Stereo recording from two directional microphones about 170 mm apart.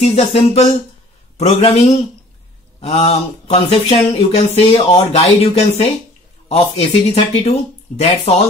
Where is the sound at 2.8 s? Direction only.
40° left (ahead or behind).